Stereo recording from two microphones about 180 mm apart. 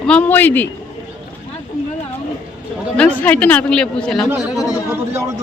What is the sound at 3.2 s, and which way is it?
A woman's voice, 10° left (ahead or behind).